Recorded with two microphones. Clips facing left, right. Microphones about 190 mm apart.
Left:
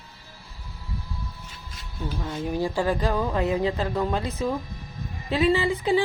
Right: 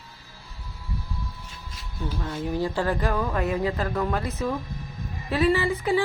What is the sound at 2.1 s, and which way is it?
Speech, 10° left (ahead or behind).